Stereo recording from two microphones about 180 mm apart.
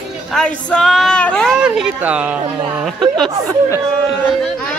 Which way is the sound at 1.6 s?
5° right (ahead or behind).